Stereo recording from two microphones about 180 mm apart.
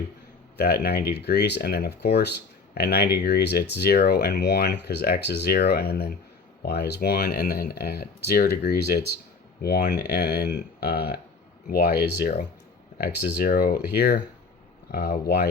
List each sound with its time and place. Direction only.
0.5 s speech: 60° left (ahead or behind)